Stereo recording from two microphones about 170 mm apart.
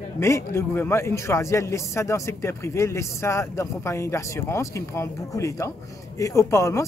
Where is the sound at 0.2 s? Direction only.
15° left (ahead or behind).